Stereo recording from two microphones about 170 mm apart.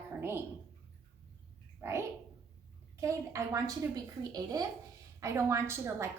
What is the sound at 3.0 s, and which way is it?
A woman's voice, 20° right (ahead or behind).